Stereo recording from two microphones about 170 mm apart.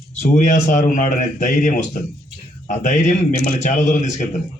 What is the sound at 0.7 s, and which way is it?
A man's voice, 45° left (ahead or behind).